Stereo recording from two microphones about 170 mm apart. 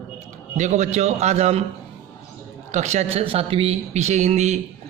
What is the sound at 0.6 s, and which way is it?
Speech, 45° right (ahead or behind).